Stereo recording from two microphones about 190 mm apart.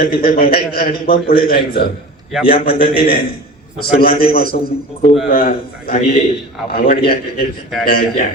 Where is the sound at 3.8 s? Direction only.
50° left (ahead or behind).